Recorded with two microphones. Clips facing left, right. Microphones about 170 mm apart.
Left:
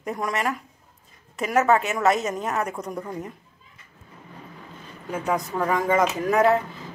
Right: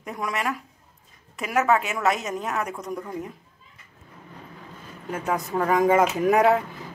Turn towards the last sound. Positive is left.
turn(degrees=-10)  # may be behind; listen again after turning